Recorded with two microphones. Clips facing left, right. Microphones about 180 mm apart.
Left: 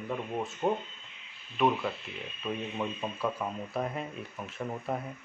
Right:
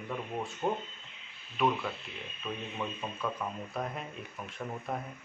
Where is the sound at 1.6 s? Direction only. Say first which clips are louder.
Left 2 dB; centre (ahead or behind).